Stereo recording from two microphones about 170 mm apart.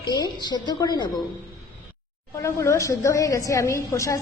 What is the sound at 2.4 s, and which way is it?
A woman's voice, 15° left (ahead or behind).